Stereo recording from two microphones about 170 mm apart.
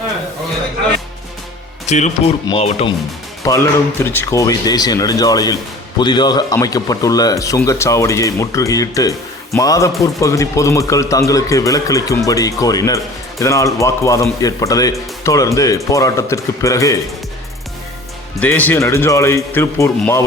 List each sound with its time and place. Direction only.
1.9 s speech: 45° left (ahead or behind)
3.4 s speech: 15° left (ahead or behind)
18.3 s a man's voice: 10° left (ahead or behind)